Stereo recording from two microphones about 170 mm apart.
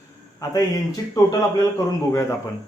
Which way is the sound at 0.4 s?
20° left (ahead or behind).